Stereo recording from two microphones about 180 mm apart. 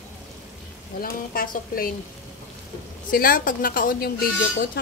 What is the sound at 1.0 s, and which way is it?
Speech, 55° left (ahead or behind).